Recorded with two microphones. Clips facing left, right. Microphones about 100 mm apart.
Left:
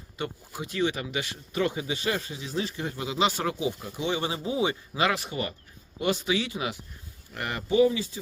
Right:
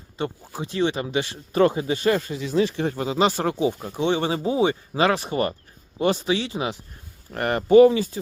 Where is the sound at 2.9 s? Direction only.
40° right (ahead or behind).